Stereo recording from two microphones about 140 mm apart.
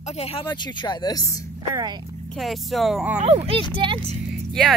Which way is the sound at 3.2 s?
45° right (ahead or behind).